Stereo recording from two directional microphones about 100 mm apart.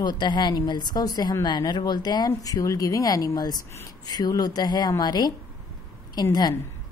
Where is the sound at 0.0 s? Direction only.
50° left (ahead or behind).